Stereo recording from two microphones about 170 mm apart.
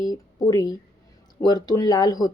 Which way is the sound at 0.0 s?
25° left (ahead or behind).